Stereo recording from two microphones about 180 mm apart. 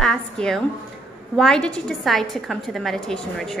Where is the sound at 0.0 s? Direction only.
5° left (ahead or behind).